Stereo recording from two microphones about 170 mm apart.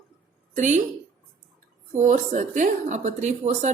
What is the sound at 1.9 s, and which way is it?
A woman's voice, 45° right (ahead or behind).